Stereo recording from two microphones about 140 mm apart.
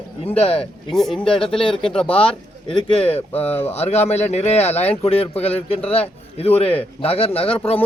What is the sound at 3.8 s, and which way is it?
A man's voice, 50° left (ahead or behind).